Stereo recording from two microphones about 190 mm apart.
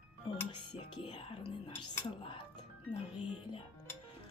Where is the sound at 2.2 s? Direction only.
25° left (ahead or behind).